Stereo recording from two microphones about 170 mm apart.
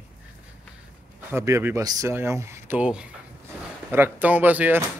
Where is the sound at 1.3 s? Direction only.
15° right (ahead or behind).